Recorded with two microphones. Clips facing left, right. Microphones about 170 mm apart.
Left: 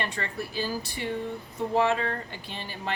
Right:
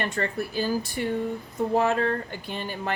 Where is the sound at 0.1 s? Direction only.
50° right (ahead or behind).